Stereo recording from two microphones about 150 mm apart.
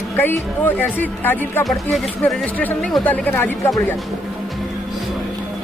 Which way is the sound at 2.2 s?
15° left (ahead or behind).